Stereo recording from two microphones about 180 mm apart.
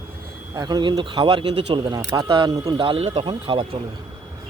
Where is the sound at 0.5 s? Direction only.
20° right (ahead or behind).